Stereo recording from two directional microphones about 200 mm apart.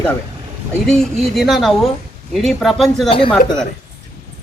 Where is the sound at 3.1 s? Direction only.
25° left (ahead or behind).